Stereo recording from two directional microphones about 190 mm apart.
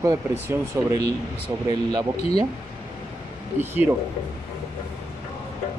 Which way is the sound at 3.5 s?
10° right (ahead or behind).